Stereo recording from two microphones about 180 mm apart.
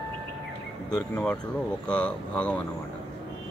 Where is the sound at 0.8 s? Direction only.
20° left (ahead or behind).